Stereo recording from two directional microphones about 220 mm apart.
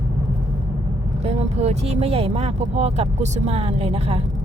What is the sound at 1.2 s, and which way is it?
Speech, 30° right (ahead or behind).